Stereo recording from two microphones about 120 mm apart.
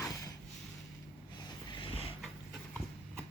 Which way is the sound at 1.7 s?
45° left (ahead or behind).